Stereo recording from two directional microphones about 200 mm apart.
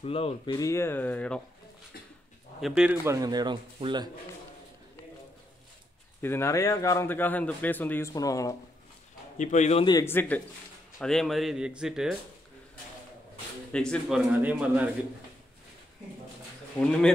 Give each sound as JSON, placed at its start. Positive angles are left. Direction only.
{"t": 0.0, "sound": "speech", "side_deg": 30}
{"t": 0.6, "sound": "speech", "side_deg": 15}
{"t": 2.6, "sound": "speech", "side_deg": -5}
{"t": 3.1, "sound": "speech", "side_deg": -20}
{"t": 6.2, "sound": "speech", "side_deg": 10}
{"t": 9.4, "sound": "a man's voice", "side_deg": 35}
{"t": 9.8, "sound": "speech", "side_deg": 15}
{"t": 13.7, "sound": "speech", "side_deg": 5}